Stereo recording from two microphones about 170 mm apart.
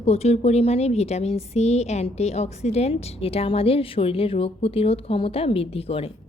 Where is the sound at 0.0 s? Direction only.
40° left (ahead or behind).